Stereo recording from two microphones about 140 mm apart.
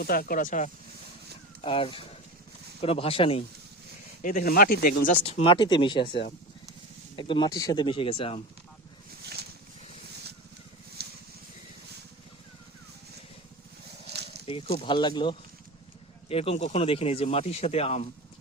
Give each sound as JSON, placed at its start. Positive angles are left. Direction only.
{"t": 0.0, "sound": "speech", "side_deg": 90}
{"t": 1.6, "sound": "speech", "side_deg": 40}
{"t": 4.2, "sound": "speech", "side_deg": 70}
{"t": 5.2, "sound": "speech", "side_deg": 45}
{"t": 14.4, "sound": "speech", "side_deg": 40}